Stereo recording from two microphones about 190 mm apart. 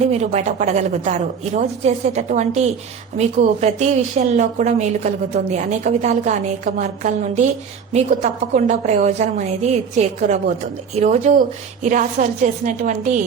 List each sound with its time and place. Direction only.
0.0 s a woman's voice: 35° right (ahead or behind)